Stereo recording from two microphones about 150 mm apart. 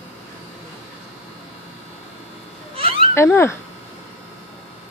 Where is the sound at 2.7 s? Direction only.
40° right (ahead or behind).